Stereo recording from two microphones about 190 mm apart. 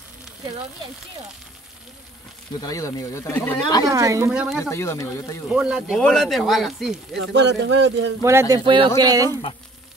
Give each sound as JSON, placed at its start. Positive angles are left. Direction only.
{"t": 2.6, "sound": "speech", "side_deg": 20}
{"t": 3.8, "sound": "a woman's voice", "side_deg": -15}
{"t": 4.3, "sound": "speech", "side_deg": -5}
{"t": 4.6, "sound": "speech", "side_deg": 15}
{"t": 5.5, "sound": "speech", "side_deg": -5}
{"t": 7.2, "sound": "speech", "side_deg": -65}
{"t": 8.2, "sound": "a woman's voice", "side_deg": -15}
{"t": 8.6, "sound": "speech", "side_deg": -25}